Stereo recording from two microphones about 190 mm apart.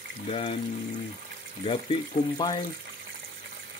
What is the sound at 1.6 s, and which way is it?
Speech, 25° left (ahead or behind).